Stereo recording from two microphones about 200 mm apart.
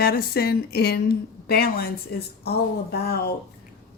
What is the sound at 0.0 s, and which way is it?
A woman's voice, 50° left (ahead or behind).